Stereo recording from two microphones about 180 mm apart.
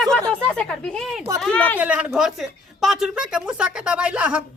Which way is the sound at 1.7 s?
10° right (ahead or behind).